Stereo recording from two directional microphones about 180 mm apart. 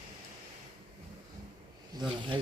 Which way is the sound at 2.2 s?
25° right (ahead or behind).